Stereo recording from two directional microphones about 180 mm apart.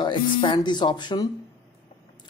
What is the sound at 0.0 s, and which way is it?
Speech, 25° left (ahead or behind).